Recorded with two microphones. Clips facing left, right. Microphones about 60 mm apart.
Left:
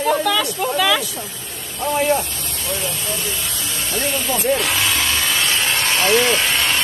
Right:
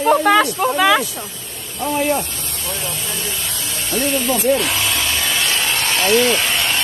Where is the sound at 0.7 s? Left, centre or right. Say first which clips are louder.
Right 4 dB; right.